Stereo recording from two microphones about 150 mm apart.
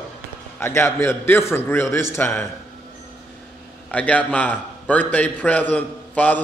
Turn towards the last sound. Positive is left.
turn(degrees=10)  # may be behind; listen again after turning